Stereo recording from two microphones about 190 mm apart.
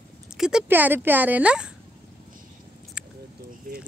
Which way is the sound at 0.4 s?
5° right (ahead or behind).